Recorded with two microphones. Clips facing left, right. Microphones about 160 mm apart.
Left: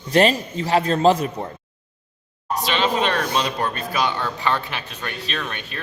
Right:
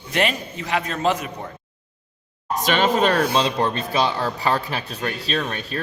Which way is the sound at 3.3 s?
25° right (ahead or behind).